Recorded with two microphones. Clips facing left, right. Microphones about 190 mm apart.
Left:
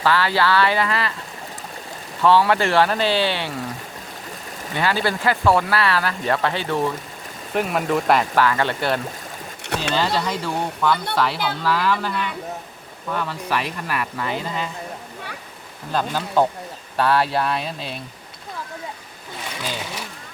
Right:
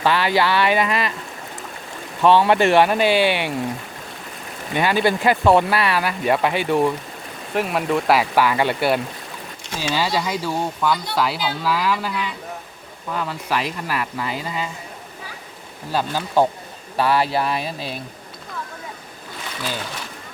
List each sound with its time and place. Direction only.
0.0 s speech: 20° right (ahead or behind)
2.2 s speech: 20° right (ahead or behind)
4.7 s speech: 20° right (ahead or behind)
7.5 s speech: centre (ahead or behind)
9.6 s speech: 65° left (ahead or behind)
10.2 s speech: 5° right (ahead or behind)
15.9 s speech: 10° right (ahead or behind)